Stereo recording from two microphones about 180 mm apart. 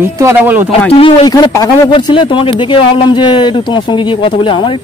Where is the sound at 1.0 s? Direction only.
25° left (ahead or behind).